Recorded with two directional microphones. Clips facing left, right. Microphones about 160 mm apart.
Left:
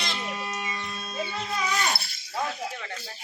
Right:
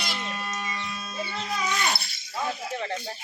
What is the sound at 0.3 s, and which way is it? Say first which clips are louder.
Chicken: even; 20° left (ahead or behind).